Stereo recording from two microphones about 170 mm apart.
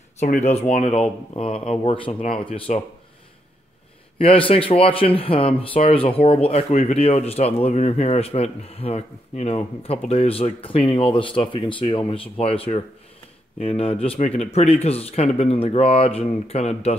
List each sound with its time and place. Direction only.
0.2 s a man's voice: 40° left (ahead or behind)
4.2 s a man's voice: 30° left (ahead or behind)